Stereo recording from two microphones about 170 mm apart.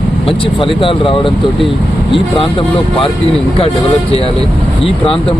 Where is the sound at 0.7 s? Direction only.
30° left (ahead or behind).